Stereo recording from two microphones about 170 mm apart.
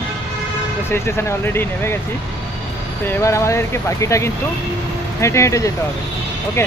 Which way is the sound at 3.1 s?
15° left (ahead or behind).